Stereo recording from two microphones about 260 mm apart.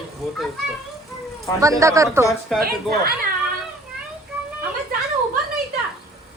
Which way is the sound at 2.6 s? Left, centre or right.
Right.